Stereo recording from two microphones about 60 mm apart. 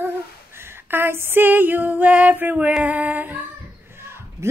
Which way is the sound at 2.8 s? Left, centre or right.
Right.